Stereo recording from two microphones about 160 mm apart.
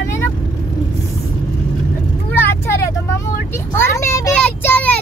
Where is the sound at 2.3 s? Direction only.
15° left (ahead or behind).